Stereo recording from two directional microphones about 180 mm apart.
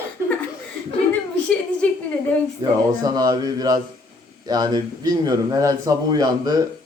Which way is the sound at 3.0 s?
20° right (ahead or behind).